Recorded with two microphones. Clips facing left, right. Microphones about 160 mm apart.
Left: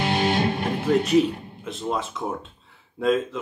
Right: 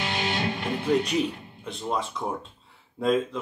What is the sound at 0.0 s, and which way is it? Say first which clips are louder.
Music: left 6 dB; 50° left (ahead or behind).